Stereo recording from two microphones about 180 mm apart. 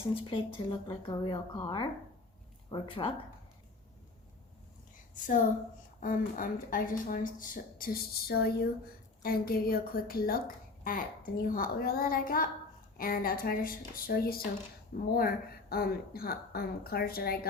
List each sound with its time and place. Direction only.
0.1 s speech: 30° left (ahead or behind)
5.1 s a woman's voice: 45° left (ahead or behind)